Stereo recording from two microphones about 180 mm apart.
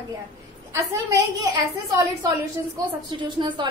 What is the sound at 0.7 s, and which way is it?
A woman's voice, 15° right (ahead or behind).